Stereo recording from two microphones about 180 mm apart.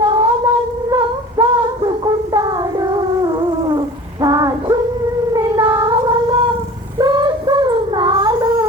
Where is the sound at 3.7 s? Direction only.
20° right (ahead or behind).